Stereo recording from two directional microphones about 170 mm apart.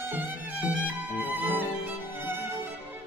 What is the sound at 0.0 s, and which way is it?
Music, 10° right (ahead or behind).